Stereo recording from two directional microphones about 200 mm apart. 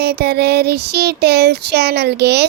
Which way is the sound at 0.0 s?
55° right (ahead or behind).